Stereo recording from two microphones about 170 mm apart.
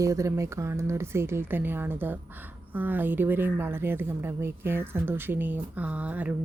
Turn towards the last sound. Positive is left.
turn(degrees=-10)  # may be behind; listen again after turning